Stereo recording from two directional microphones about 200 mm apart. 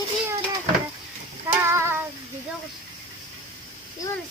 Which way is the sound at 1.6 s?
10° right (ahead or behind).